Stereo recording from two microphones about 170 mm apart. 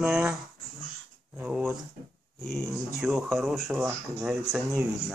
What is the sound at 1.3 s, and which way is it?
Speech, 5° right (ahead or behind).